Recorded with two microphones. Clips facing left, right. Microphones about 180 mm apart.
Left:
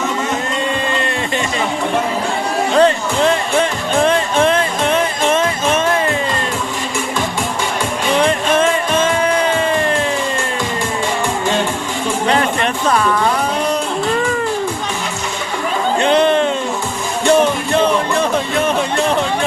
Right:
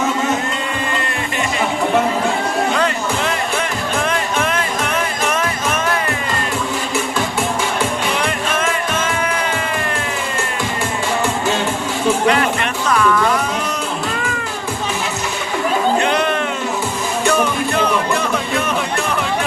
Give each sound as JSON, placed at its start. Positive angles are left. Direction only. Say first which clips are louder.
{"t": 2.7, "sound": "music", "louder": "left 6 dB", "side_deg": 35}
{"t": 8.2, "sound": "music", "louder": "left 6 dB", "side_deg": 30}
{"t": 12.9, "sound": "music", "louder": "right 2 dB", "side_deg": 35}
{"t": 16.0, "sound": "a sound", "louder": "left 5 dB", "side_deg": 30}
{"t": 17.2, "sound": "music", "louder": "left 5 dB", "side_deg": 25}